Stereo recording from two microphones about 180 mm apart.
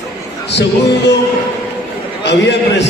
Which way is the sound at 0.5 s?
70° left (ahead or behind).